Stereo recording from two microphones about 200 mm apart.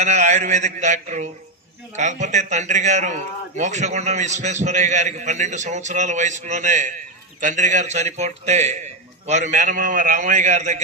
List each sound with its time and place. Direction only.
0.0 s a man's voice: 35° right (ahead or behind)